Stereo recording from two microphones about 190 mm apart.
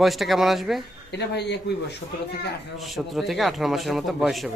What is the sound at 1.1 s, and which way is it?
Speech, 60° left (ahead or behind).